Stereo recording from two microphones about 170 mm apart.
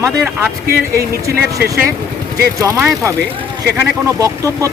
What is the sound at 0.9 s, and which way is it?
Speech, 15° right (ahead or behind).